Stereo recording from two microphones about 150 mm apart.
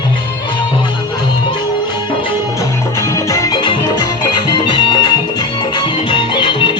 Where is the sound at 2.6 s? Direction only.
20° left (ahead or behind).